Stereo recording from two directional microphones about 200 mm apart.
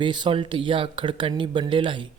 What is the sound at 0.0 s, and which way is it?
Speech, 25° right (ahead or behind).